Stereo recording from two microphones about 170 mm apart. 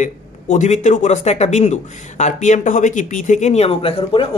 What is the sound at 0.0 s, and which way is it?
Speech, 45° left (ahead or behind).